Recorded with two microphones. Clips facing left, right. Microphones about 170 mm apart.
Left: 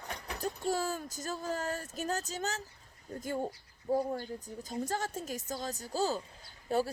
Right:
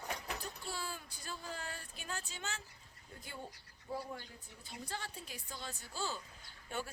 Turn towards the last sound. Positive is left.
turn(degrees=35)  # may be behind; listen again after turning